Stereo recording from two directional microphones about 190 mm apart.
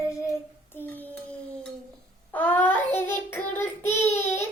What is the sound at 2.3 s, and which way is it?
Child singing, 10° left (ahead or behind).